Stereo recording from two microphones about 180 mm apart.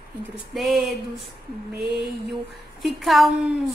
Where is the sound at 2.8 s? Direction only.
Centre (ahead or behind).